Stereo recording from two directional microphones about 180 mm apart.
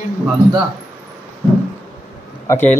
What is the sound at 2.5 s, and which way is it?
Speech, 15° left (ahead or behind).